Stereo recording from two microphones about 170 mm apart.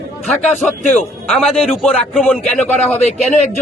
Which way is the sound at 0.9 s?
5° left (ahead or behind).